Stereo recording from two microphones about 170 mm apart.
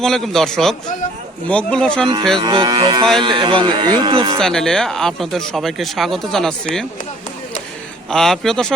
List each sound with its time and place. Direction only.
0.0 s speech: 5° left (ahead or behind)
2.4 s speech: 25° right (ahead or behind)
4.4 s speech: 5° left (ahead or behind)
8.1 s speech: centre (ahead or behind)